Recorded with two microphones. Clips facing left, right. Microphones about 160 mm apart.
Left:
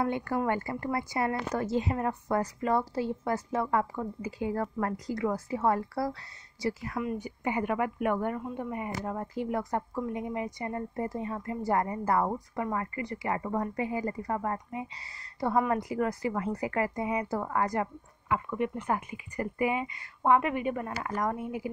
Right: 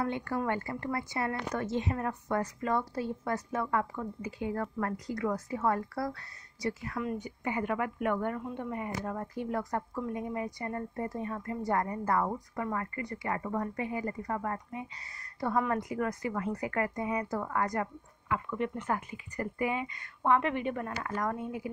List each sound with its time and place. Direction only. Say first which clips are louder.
0.3 s a woman's voice: left 2 dB; 15° left (ahead or behind)
1.3 s a woman's voice: left 3 dB; 35° left (ahead or behind)
7.0 s a woman's voice: left 2 dB; 10° left (ahead or behind); by 15.5 s 30° left (ahead or behind)
15.5 s a woman's voice: left 3 dB; 10° left (ahead or behind)
15.8 s a woman's voice: left 3 dB; 30° left (ahead or behind)